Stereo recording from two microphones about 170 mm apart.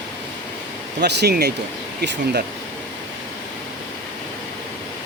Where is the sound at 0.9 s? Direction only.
75° right (ahead or behind).